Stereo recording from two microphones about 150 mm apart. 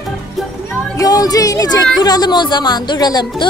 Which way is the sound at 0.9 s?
25° left (ahead or behind).